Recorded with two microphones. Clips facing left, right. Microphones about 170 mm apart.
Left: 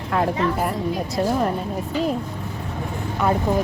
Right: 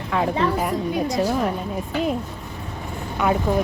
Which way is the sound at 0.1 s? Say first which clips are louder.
Left 1 dB; centre (ahead or behind).